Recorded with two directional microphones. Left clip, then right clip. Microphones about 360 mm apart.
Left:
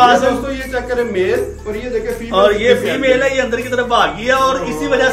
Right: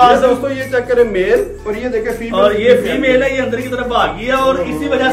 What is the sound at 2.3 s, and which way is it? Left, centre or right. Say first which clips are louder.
A man's voice: right 1 dB; left.